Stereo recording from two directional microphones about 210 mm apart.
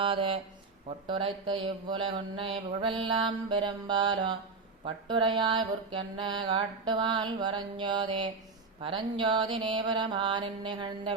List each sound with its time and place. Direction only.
0.0 s speech: 25° right (ahead or behind)